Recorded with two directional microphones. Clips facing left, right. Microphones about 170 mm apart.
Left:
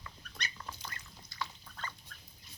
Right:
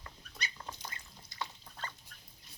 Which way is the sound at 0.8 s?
25° right (ahead or behind).